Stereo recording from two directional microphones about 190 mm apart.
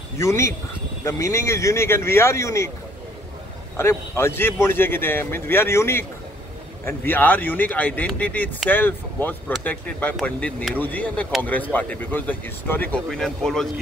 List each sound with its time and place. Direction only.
0.2 s speech: 15° left (ahead or behind)
3.7 s speech: 15° left (ahead or behind)